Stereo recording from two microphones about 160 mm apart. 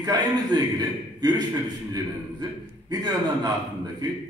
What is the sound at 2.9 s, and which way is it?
Speech, 25° right (ahead or behind).